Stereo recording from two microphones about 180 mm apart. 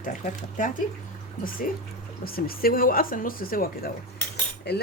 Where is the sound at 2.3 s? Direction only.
55° left (ahead or behind).